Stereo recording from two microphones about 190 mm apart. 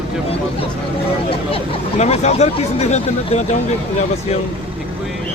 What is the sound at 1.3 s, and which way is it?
Speech, 30° left (ahead or behind).